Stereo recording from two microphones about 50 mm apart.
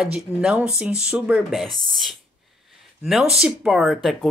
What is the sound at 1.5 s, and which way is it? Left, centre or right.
Speech, centre.